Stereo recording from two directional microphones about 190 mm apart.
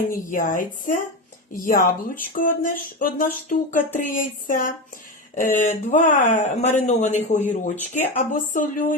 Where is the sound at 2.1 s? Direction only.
45° left (ahead or behind).